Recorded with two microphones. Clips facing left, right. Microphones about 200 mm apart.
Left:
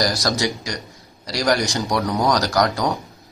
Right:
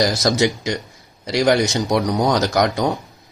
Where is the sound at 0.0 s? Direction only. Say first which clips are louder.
Right 4 dB; 25° right (ahead or behind).